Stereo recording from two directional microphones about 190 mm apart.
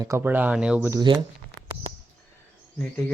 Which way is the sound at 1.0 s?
25° right (ahead or behind).